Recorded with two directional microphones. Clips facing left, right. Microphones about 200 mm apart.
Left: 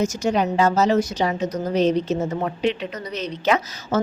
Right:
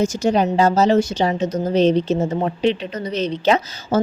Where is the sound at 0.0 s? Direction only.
30° right (ahead or behind).